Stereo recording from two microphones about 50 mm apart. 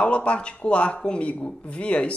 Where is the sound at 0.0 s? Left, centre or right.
Left.